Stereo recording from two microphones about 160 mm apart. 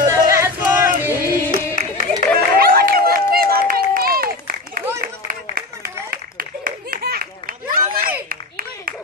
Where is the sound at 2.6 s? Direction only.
65° right (ahead or behind).